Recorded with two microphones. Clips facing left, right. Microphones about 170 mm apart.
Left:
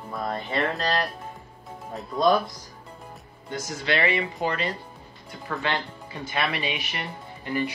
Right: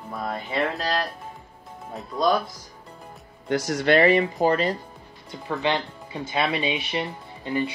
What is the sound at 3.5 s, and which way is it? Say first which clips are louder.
Speech: right 8 dB; 70° right (ahead or behind).